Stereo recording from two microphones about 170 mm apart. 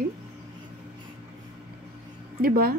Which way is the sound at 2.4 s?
60° right (ahead or behind).